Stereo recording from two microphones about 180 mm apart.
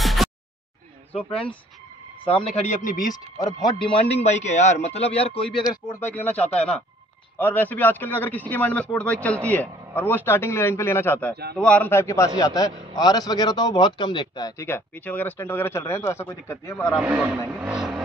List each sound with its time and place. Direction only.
0.0 s a sound: centre (ahead or behind)
2.2 s a man's voice: 35° left (ahead or behind)
3.9 s a man's voice: 35° left (ahead or behind)
6.1 s a man's voice: 10° left (ahead or behind)
16.9 s a man's voice: 10° right (ahead or behind)
17.5 s vehicle: 5° right (ahead or behind)